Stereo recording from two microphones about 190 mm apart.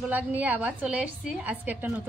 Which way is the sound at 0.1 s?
10° right (ahead or behind).